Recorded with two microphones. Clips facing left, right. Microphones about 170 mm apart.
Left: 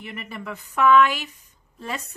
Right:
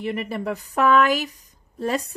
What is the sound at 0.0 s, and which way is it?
A woman's voice, 35° right (ahead or behind).